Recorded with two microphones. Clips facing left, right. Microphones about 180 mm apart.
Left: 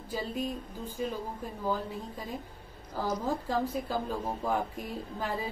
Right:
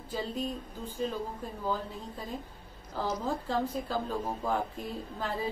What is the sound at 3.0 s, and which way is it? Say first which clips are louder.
Speech: left 1 dB; 10° left (ahead or behind).